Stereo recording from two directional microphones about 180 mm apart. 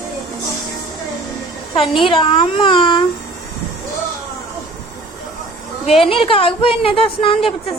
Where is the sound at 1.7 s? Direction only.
30° left (ahead or behind).